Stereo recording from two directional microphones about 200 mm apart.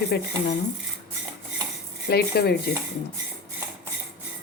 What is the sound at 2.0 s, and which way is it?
Speech, 50° left (ahead or behind).